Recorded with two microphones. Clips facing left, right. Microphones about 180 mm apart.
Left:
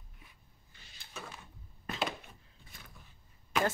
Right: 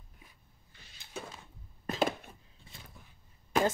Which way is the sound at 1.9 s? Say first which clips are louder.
Right 6 dB; 45° right (ahead or behind).